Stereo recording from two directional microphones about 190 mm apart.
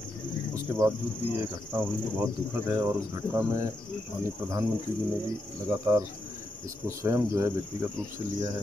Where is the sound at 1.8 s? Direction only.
10° right (ahead or behind).